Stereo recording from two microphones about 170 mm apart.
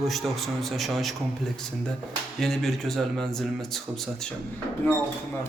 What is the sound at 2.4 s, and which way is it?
A man's voice, centre (ahead or behind).